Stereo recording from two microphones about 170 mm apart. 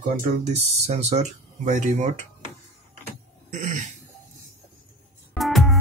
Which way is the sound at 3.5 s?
45° right (ahead or behind).